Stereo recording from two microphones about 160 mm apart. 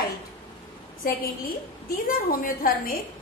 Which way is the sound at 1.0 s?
65° left (ahead or behind).